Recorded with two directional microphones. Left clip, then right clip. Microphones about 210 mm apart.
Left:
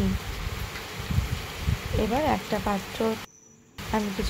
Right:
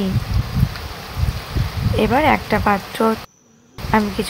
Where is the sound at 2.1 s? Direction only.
20° right (ahead or behind).